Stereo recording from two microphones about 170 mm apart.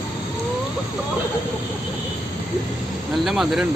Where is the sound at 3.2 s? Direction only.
Centre (ahead or behind).